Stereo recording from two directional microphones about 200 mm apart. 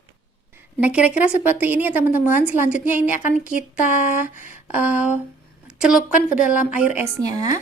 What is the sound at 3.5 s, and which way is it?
Speech, 40° left (ahead or behind).